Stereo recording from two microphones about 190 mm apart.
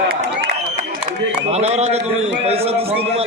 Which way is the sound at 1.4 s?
35° right (ahead or behind).